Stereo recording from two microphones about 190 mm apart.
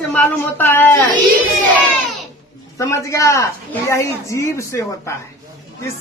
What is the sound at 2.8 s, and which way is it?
A woman's voice, 15° left (ahead or behind).